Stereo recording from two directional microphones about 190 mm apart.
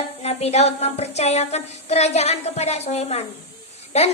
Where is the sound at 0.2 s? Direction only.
35° left (ahead or behind).